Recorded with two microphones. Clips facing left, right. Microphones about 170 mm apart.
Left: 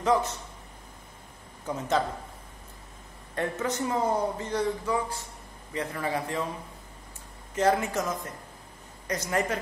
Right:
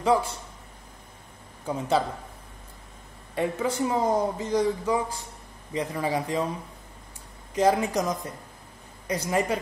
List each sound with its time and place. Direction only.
0.0 s a man's voice: 10° right (ahead or behind)
1.7 s a man's voice: 10° right (ahead or behind)
3.3 s a man's voice: 10° right (ahead or behind)
7.5 s a man's voice: 15° right (ahead or behind)